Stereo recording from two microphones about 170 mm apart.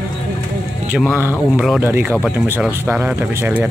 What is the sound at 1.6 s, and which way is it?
Speech, 5° right (ahead or behind).